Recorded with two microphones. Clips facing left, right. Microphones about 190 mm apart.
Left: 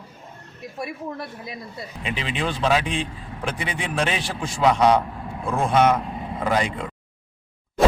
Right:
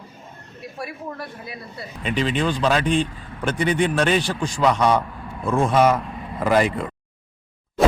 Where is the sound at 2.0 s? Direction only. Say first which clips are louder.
Right 5 dB; centre (ahead or behind).